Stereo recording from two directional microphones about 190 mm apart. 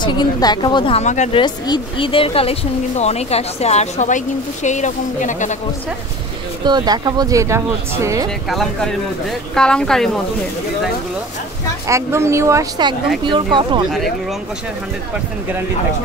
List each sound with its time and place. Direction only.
0.0 s speech: 25° left (ahead or behind)
1.4 s speech: 25° left (ahead or behind); by 5.6 s 40° left (ahead or behind)
6.6 s speech: 20° right (ahead or behind)
8.5 s a woman's voice: centre (ahead or behind)
11.9 s speech: 15° right (ahead or behind)